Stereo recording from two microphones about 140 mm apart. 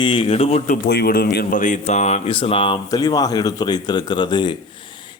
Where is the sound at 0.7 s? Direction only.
90° left; by 2.7 s 40° left (ahead or behind).